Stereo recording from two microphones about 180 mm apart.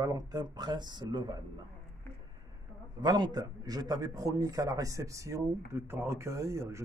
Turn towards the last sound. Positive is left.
turn(degrees=-15)  # may be behind; listen again after turning